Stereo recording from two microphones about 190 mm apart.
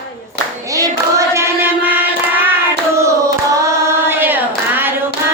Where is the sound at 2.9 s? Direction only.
15° right (ahead or behind).